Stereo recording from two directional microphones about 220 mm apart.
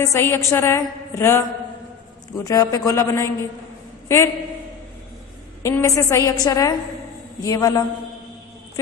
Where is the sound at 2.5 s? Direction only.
15° left (ahead or behind).